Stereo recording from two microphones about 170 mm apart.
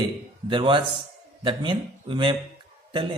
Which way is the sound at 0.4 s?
30° right (ahead or behind).